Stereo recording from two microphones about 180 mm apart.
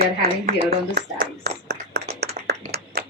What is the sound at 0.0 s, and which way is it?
Speech, 60° right (ahead or behind).